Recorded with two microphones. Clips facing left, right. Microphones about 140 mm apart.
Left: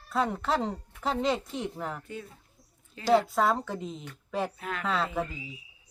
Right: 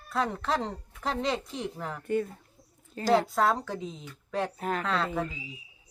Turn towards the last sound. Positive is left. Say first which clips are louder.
# even
turn(degrees=0)  # may be behind; listen again after turning